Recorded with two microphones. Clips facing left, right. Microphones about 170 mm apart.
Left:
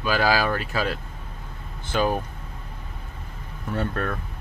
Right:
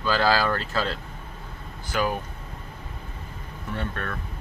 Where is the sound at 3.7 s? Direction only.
40° left (ahead or behind).